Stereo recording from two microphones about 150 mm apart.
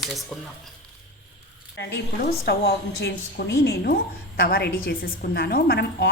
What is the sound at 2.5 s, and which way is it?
A woman's voice, 90° left.